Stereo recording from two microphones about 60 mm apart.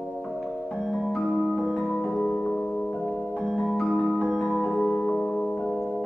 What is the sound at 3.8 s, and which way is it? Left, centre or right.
Music, left.